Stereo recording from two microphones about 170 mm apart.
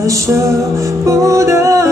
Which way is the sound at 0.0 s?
20° right (ahead or behind).